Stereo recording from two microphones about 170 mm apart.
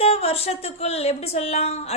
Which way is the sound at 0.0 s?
35° left (ahead or behind).